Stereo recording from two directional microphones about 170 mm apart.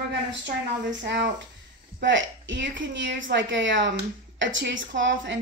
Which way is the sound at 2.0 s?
90° right.